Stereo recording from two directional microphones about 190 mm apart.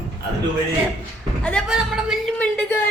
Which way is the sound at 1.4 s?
Centre (ahead or behind).